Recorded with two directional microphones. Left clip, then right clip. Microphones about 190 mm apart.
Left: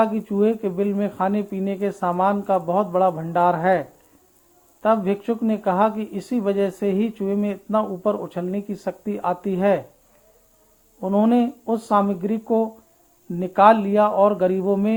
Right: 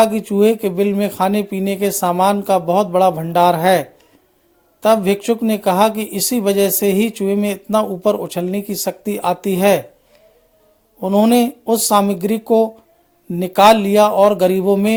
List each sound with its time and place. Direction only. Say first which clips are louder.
0.0 s speech: right 7 dB; 40° right (ahead or behind)
11.0 s speech: right 6 dB; 40° right (ahead or behind)